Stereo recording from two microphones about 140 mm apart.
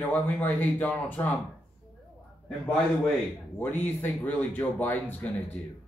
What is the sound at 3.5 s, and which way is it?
Speech, 15° left (ahead or behind).